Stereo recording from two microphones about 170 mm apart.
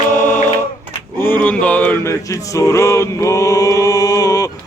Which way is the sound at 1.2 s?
10° left (ahead or behind).